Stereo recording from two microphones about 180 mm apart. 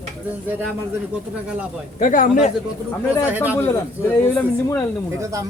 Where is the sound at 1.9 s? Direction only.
45° left (ahead or behind).